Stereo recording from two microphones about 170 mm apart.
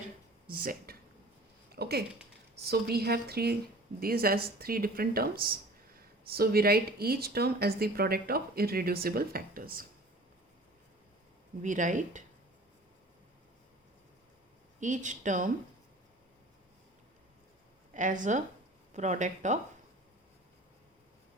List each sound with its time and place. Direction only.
0.5 s speech: 55° right (ahead or behind)
1.7 s a woman's voice: 70° right (ahead or behind)
11.6 s speech: 50° right (ahead or behind)
14.8 s speech: 45° right (ahead or behind)
17.9 s speech: 50° right (ahead or behind)